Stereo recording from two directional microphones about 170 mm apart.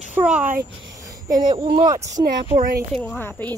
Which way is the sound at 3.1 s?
10° left (ahead or behind).